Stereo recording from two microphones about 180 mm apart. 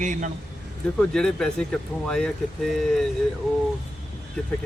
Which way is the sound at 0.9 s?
5° left (ahead or behind).